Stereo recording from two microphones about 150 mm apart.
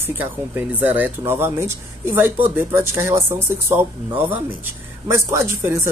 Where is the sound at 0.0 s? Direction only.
15° right (ahead or behind).